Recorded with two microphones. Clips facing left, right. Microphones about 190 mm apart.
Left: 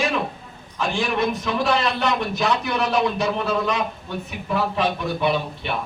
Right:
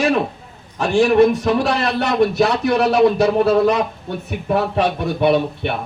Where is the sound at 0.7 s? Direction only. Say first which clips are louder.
Right 10 dB; 70° right (ahead or behind).